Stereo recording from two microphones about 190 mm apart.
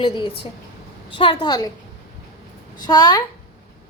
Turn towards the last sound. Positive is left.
turn(degrees=20)  # may be behind; listen again after turning